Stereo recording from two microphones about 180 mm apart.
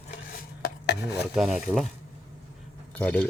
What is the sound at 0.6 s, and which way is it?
Chopping, 65° left (ahead or behind).